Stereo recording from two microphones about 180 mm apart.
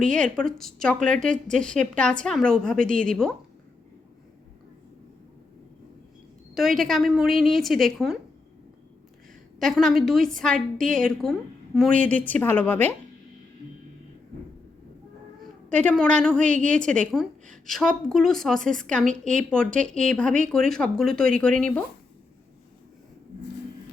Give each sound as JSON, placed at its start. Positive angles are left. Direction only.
{"t": 0.0, "sound": "a woman's voice", "side_deg": 5}
{"t": 6.5, "sound": "a woman's voice", "side_deg": 0}
{"t": 9.6, "sound": "a woman's voice", "side_deg": 0}
{"t": 15.8, "sound": "a woman's voice", "side_deg": 5}
{"t": 16.4, "sound": "a woman's voice", "side_deg": -45}
{"t": 16.6, "sound": "a woman's voice", "side_deg": 5}